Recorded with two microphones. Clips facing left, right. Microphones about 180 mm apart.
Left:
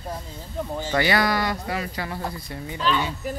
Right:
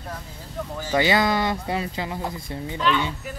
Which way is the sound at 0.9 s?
20° right (ahead or behind).